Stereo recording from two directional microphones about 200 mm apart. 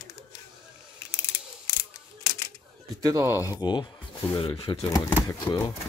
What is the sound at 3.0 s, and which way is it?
Speech, 15° right (ahead or behind).